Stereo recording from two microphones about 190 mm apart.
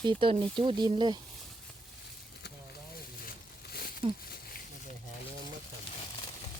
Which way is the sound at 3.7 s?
55° left (ahead or behind).